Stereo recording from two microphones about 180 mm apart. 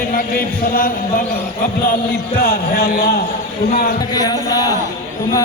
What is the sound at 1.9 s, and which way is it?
Speech, 55° left (ahead or behind).